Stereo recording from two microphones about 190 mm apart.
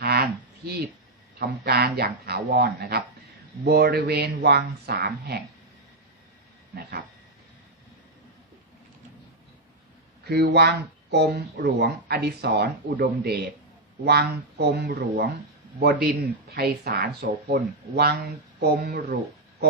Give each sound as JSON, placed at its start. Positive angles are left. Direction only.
{"t": 0.0, "sound": "a sound", "side_deg": -55}
{"t": 1.4, "sound": "speech", "side_deg": -55}
{"t": 10.2, "sound": "speech", "side_deg": -55}